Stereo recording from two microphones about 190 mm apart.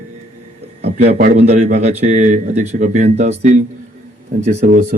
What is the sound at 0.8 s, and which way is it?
A man's voice, 35° right (ahead or behind).